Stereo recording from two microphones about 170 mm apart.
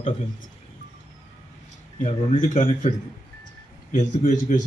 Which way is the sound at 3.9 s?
50° left (ahead or behind).